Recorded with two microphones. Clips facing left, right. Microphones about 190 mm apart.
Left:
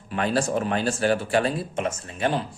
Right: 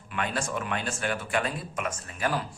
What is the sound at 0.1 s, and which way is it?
Speech, 35° left (ahead or behind).